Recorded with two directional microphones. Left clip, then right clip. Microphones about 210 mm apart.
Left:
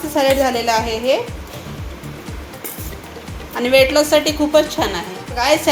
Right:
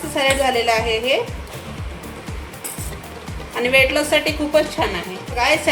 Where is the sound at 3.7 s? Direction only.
20° left (ahead or behind).